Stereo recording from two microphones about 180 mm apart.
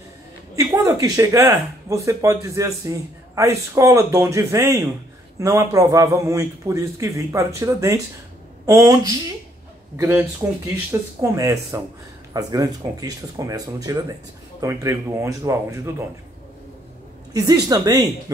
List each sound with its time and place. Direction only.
0.6 s speech: 20° right (ahead or behind)
17.3 s speech: 20° right (ahead or behind)